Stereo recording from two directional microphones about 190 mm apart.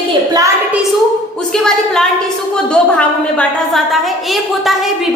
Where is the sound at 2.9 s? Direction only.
5° left (ahead or behind).